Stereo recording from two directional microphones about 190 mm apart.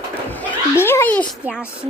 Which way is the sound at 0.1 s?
10° left (ahead or behind).